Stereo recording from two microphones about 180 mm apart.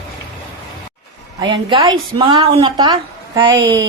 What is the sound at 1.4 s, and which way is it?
Speech, 25° right (ahead or behind).